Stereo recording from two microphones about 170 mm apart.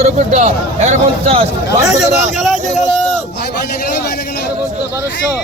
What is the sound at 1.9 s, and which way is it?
Speech, centre (ahead or behind).